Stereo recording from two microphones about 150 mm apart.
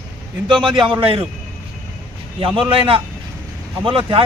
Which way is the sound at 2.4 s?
35° right (ahead or behind).